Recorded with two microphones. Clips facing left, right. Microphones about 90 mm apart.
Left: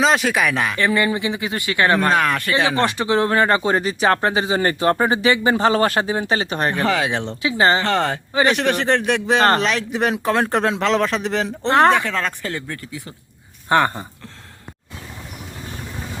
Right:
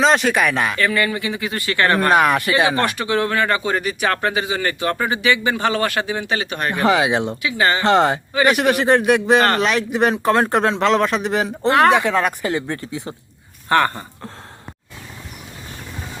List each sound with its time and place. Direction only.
0.0 s speech: centre (ahead or behind)
0.8 s speech: 25° left (ahead or behind)
2.0 s speech: 15° right (ahead or behind)
2.8 s speech: 25° left (ahead or behind)
6.7 s speech: 15° right (ahead or behind)
7.4 s speech: 30° left (ahead or behind)
7.8 s speech: 20° right (ahead or behind)
8.3 s speech: 25° left (ahead or behind)
8.5 s speech: 10° right (ahead or behind)
11.9 s speech: 15° right (ahead or behind)
13.7 s speech: 15° left (ahead or behind)